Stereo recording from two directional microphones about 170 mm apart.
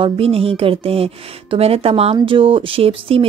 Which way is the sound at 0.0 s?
35° right (ahead or behind).